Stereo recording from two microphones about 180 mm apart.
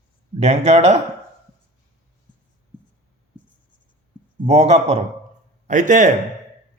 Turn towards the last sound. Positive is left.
turn(degrees=-45)  # may be behind; listen again after turning